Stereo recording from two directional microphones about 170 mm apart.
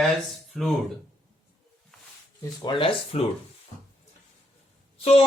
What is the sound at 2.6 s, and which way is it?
Speech, 30° left (ahead or behind).